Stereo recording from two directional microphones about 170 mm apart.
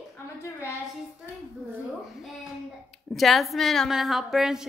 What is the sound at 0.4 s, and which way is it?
Speech, 15° left (ahead or behind).